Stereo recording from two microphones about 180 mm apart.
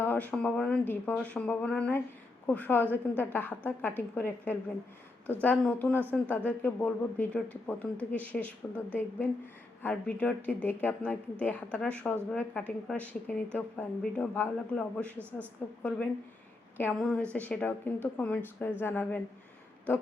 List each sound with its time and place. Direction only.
0.0 s a woman's voice: 10° left (ahead or behind)
15.2 s speech: 10° right (ahead or behind)
15.8 s a woman's voice: 5° left (ahead or behind)